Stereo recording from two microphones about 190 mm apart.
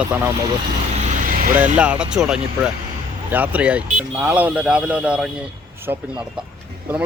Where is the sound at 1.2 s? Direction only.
45° right (ahead or behind).